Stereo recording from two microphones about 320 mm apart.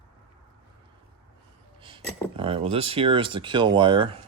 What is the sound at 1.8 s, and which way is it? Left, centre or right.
Speech, centre.